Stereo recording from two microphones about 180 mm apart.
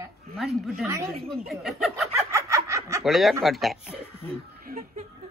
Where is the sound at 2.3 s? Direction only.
15° right (ahead or behind).